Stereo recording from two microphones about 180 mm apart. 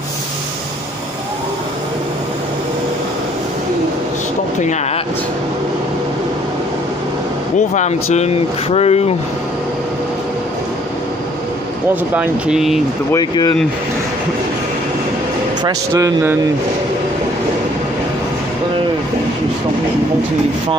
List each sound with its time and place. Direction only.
7.5 s speech: 40° left (ahead or behind)
11.9 s speech: 10° right (ahead or behind)
13.1 s speech: 20° left (ahead or behind)
15.6 s speech: 15° right (ahead or behind)